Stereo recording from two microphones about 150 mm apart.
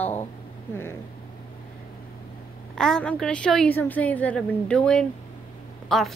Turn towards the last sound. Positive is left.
turn(degrees=0)  # may be behind; listen again after turning